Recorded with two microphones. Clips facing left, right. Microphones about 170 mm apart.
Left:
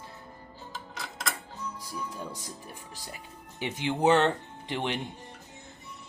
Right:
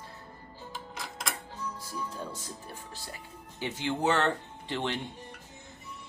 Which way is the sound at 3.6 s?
20° left (ahead or behind).